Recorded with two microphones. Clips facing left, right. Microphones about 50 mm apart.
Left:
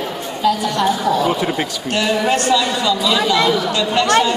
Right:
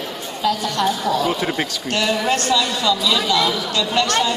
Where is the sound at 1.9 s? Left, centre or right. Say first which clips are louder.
Left 3 dB; centre.